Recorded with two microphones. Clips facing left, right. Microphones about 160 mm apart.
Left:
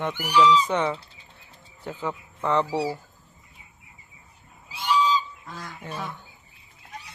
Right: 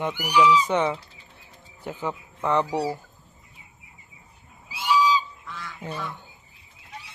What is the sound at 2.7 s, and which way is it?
Speech, 5° left (ahead or behind).